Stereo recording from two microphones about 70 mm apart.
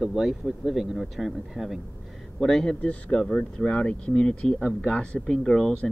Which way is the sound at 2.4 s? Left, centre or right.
Centre.